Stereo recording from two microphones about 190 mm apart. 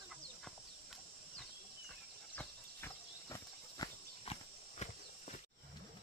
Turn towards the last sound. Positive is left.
turn(degrees=35)  # may be behind; listen again after turning